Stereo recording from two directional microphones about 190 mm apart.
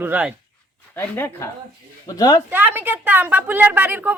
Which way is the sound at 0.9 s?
10° left (ahead or behind).